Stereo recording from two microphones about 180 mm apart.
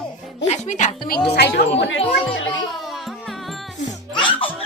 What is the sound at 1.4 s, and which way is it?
Speech, 70° left (ahead or behind).